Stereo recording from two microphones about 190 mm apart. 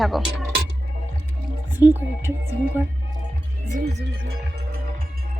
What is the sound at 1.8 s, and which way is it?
Speech, 10° right (ahead or behind).